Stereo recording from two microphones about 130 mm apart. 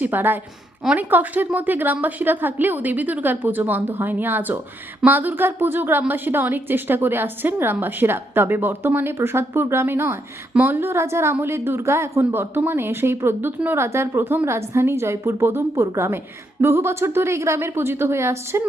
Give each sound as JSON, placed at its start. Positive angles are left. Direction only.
{"t": 0.0, "sound": "a woman's voice", "side_deg": -15}